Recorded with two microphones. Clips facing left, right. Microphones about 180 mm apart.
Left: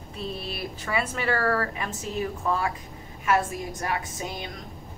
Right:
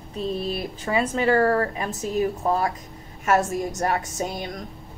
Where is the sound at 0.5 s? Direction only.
30° right (ahead or behind).